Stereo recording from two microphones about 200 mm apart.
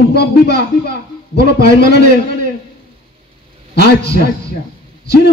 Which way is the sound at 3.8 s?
55° left (ahead or behind).